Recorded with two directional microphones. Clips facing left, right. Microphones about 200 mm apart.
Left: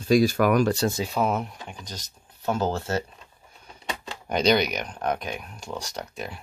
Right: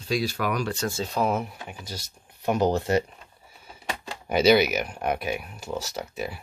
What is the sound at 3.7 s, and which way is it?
Speech, 5° right (ahead or behind).